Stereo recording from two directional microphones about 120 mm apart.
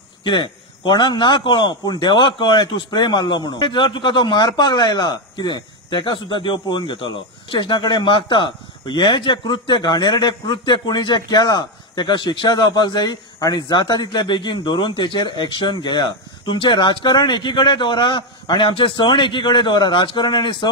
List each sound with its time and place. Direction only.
0.2 s speech: 40° left (ahead or behind)